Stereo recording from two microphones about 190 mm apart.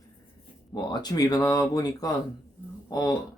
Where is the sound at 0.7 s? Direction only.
20° left (ahead or behind).